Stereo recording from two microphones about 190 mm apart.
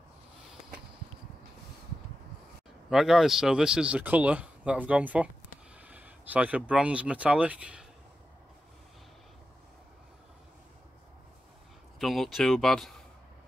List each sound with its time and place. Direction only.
2.9 s speech: centre (ahead or behind)
5.9 s a sound: 10° right (ahead or behind)
6.7 s speech: 5° right (ahead or behind)
12.0 s speech: centre (ahead or behind)